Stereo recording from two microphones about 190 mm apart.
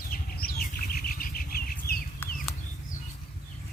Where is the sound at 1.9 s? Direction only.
55° left (ahead or behind).